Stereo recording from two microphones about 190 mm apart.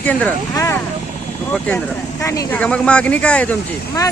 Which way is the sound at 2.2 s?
15° left (ahead or behind).